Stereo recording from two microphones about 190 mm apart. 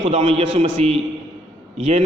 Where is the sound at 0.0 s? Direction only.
35° right (ahead or behind).